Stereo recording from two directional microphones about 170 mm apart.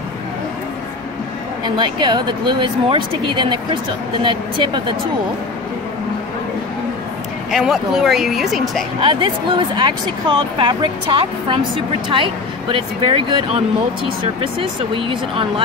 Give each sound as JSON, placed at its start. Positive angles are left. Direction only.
{"t": 1.8, "sound": "speech", "side_deg": -30}
{"t": 7.5, "sound": "speech", "side_deg": -5}
{"t": 9.0, "sound": "speech", "side_deg": -30}